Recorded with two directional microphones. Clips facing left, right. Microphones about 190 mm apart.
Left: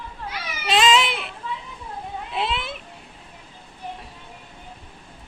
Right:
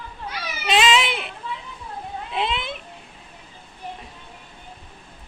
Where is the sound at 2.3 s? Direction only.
Centre (ahead or behind).